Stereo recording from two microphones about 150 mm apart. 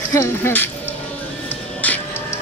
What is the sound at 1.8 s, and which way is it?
Music, 15° left (ahead or behind).